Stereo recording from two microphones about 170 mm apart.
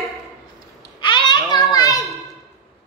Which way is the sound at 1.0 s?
25° left (ahead or behind).